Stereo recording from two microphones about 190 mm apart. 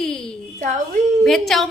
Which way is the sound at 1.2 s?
Centre (ahead or behind).